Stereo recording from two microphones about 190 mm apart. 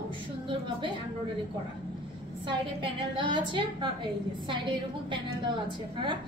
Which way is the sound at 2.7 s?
25° right (ahead or behind).